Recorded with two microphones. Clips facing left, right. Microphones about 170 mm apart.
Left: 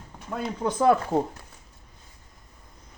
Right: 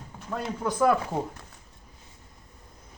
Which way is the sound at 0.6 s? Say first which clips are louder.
Left 2 dB; 25° left (ahead or behind).